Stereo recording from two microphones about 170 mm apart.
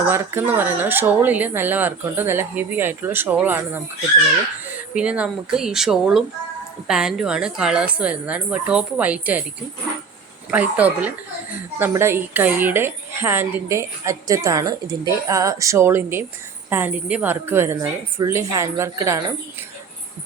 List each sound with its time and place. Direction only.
0.1 s speech: 10° right (ahead or behind)
4.9 s speech: 5° right (ahead or behind)
10.5 s speech: 10° right (ahead or behind)